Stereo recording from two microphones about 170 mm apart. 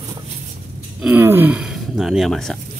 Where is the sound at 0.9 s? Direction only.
10° right (ahead or behind).